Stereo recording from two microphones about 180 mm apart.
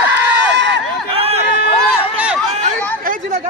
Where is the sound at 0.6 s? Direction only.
75° right (ahead or behind).